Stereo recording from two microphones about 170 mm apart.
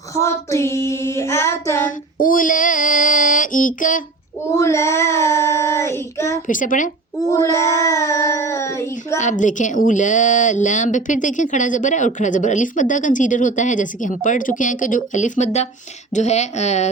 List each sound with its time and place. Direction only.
0.1 s child singing: 15° left (ahead or behind)
2.1 s child singing: 55° left (ahead or behind)
4.5 s child singing: 15° left (ahead or behind)
6.5 s a woman's voice: 50° left (ahead or behind)
7.3 s child singing: 20° left (ahead or behind)
9.1 s a woman's voice: 45° left (ahead or behind)